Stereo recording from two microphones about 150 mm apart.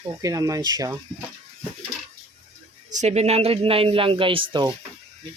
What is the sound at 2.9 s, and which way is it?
Speech, 50° right (ahead or behind).